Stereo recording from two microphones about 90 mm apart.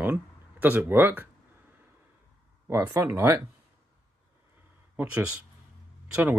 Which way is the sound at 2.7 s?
30° right (ahead or behind).